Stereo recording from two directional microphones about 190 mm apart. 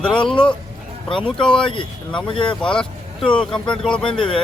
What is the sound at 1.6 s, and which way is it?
Speech, 25° left (ahead or behind).